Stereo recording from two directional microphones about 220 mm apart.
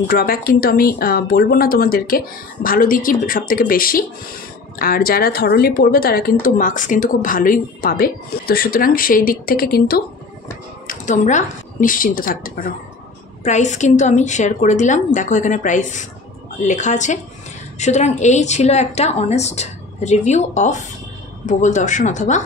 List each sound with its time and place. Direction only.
0.1 s a woman's voice: 45° left (ahead or behind)
10.9 s a woman's voice: 35° left (ahead or behind)